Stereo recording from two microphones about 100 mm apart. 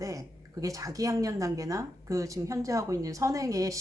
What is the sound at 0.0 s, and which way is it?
Speech, 35° right (ahead or behind).